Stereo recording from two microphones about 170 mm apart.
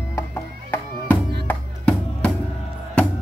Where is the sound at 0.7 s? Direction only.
10° left (ahead or behind).